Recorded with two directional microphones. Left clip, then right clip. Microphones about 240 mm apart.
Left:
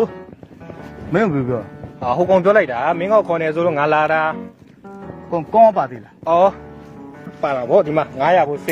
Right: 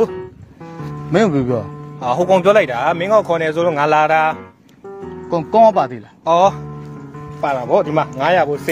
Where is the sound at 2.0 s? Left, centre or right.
Right.